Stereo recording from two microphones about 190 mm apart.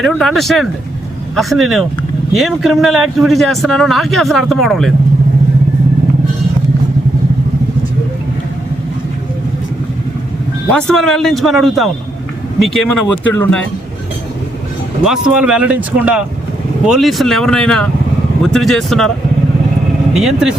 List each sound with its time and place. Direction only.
0.0 s speech: centre (ahead or behind)
10.7 s speech: 5° left (ahead or behind)
15.0 s speech: 5° right (ahead or behind)
20.1 s speech: centre (ahead or behind)